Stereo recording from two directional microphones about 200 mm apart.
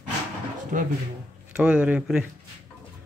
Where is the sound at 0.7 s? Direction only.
40° right (ahead or behind).